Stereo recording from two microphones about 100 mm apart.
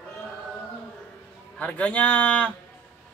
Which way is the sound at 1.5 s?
15° left (ahead or behind).